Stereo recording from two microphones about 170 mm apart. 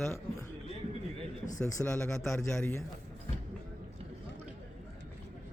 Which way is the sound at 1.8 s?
5° left (ahead or behind).